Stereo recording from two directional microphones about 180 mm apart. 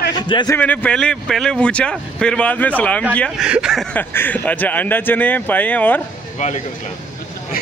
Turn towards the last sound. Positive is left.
turn(degrees=40)  # may be behind; listen again after turning